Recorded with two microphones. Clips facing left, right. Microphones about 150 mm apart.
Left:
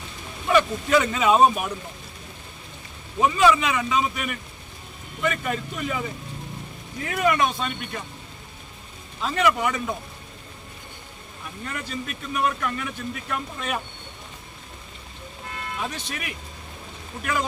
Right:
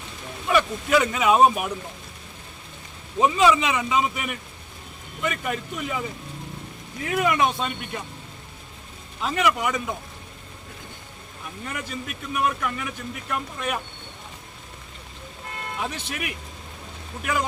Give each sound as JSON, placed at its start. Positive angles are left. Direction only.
{"t": 0.5, "sound": "speech", "side_deg": -10}
{"t": 3.2, "sound": "speech", "side_deg": -15}
{"t": 7.1, "sound": "speech", "side_deg": -10}
{"t": 9.2, "sound": "speech", "side_deg": -10}
{"t": 11.6, "sound": "speech", "side_deg": -15}
{"t": 15.8, "sound": "speech", "side_deg": -15}